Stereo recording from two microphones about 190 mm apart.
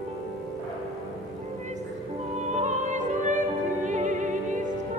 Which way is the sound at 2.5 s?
40° right (ahead or behind).